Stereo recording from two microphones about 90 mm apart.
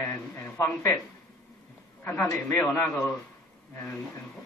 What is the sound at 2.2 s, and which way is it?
Speech, 25° left (ahead or behind).